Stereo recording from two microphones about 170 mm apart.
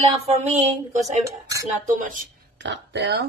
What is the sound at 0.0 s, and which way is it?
A woman's voice, 40° right (ahead or behind).